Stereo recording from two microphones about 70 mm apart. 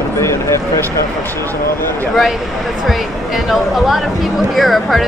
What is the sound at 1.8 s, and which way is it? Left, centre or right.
Speech, left.